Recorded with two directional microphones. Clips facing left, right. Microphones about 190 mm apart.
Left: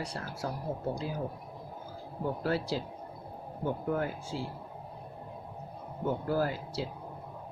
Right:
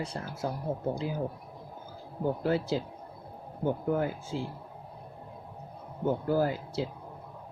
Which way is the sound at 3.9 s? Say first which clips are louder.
Right 3 dB; 20° right (ahead or behind).